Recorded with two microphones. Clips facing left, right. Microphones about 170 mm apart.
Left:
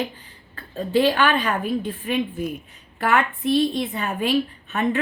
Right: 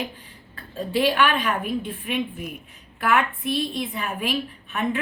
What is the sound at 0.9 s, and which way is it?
A woman's voice, 30° left (ahead or behind).